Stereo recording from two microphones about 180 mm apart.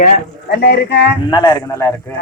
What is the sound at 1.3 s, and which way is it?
Speech, 25° left (ahead or behind).